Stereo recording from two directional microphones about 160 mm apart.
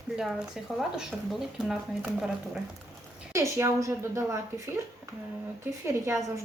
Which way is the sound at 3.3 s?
20° right (ahead or behind).